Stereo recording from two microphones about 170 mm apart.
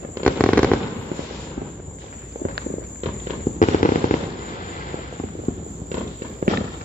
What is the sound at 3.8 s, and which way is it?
Fireworks, 50° left (ahead or behind).